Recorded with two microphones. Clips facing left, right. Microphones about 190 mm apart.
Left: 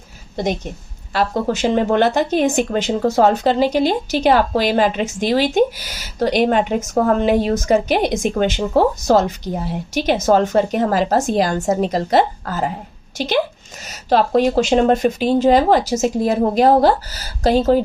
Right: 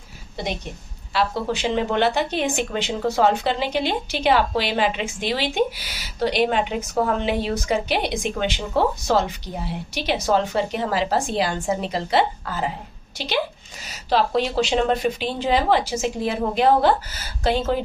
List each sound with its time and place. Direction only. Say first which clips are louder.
1.1 s speech: left 4 dB; 45° left (ahead or behind)